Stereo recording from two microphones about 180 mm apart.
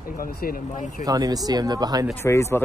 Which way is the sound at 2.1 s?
15° left (ahead or behind).